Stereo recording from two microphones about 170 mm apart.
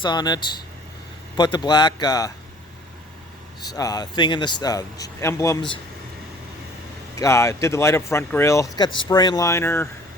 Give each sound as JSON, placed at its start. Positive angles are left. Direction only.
{"t": 0.0, "sound": "speech", "side_deg": 25}
{"t": 3.7, "sound": "speech", "side_deg": 20}
{"t": 7.2, "sound": "speech", "side_deg": 15}